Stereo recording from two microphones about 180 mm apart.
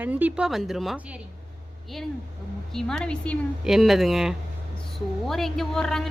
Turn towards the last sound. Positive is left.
turn(degrees=0)  # may be behind; listen again after turning